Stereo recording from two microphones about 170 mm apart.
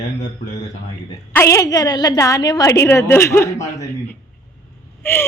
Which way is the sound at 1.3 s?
15° left (ahead or behind).